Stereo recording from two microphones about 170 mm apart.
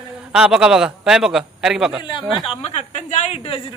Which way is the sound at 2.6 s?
40° left (ahead or behind).